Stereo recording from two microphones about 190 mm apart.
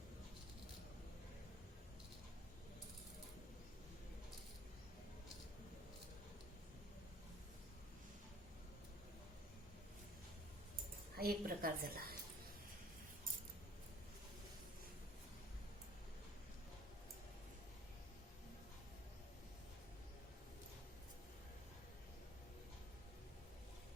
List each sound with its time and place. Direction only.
11.2 s a woman's voice: 50° right (ahead or behind)